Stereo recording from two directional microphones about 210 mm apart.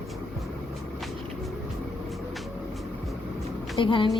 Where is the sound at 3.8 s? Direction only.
25° left (ahead or behind).